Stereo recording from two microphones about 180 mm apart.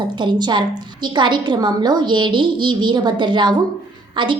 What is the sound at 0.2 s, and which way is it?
A woman's voice, 25° right (ahead or behind).